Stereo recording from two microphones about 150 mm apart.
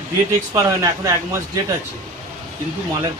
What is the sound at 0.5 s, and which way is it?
Speech, 20° right (ahead or behind).